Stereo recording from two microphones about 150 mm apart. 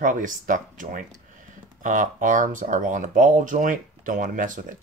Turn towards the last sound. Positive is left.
turn(degrees=-60)  # may be behind; listen again after turning